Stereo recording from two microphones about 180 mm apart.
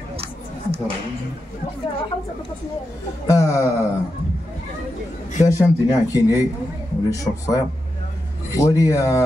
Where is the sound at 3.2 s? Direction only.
15° left (ahead or behind).